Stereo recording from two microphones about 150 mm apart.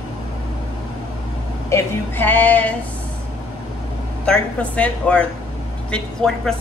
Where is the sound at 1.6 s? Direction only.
15° left (ahead or behind).